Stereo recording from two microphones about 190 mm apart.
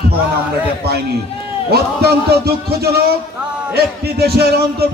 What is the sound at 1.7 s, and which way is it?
A man's voice, 55° right (ahead or behind).